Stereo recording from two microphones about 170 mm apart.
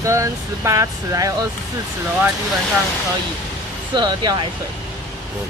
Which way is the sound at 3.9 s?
25° right (ahead or behind).